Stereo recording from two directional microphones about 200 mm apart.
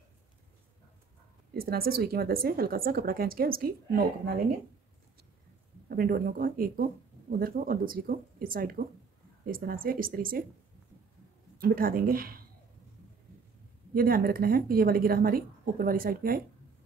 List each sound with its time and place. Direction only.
1.5 s speech: 50° right (ahead or behind)
5.9 s speech: 45° right (ahead or behind)
11.6 s speech: 45° right (ahead or behind)
13.9 s speech: 45° right (ahead or behind)